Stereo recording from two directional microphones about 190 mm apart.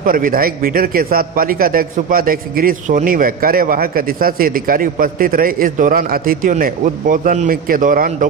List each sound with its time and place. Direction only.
0.0 s a man's voice: 50° right (ahead or behind)